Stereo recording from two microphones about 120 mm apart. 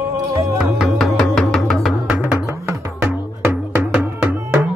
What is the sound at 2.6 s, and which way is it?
Music, 25° right (ahead or behind).